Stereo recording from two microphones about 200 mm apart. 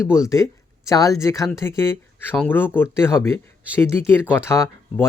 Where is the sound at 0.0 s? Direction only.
15° left (ahead or behind).